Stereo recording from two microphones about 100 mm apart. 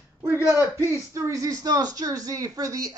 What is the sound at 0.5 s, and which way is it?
Speech, 30° right (ahead or behind).